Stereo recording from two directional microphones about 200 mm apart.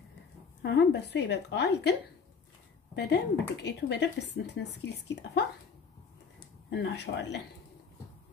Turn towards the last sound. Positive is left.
turn(degrees=60)  # may be behind; listen again after turning